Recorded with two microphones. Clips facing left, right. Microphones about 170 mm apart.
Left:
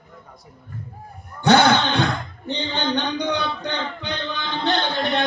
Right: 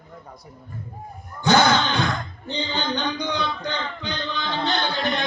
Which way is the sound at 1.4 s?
60° left (ahead or behind).